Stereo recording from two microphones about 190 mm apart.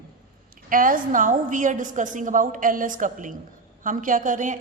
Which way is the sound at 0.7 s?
45° right (ahead or behind).